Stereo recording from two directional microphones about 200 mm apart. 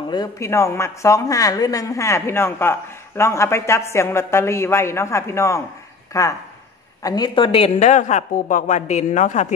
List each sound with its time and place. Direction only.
0.1 s a man's voice: 15° left (ahead or behind); by 9.5 s 35° left (ahead or behind)